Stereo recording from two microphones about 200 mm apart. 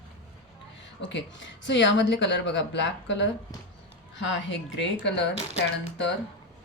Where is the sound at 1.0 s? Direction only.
65° left (ahead or behind).